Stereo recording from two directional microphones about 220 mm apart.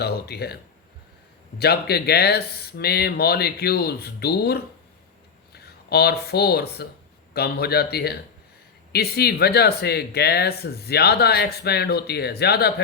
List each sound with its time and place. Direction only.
0.0 s speech: 45° left (ahead or behind)
1.5 s speech: 45° left (ahead or behind)